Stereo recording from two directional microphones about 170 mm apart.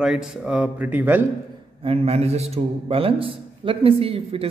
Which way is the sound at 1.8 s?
35° right (ahead or behind).